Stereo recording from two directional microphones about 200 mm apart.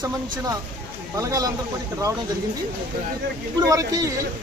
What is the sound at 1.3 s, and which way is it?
Speech, 20° right (ahead or behind).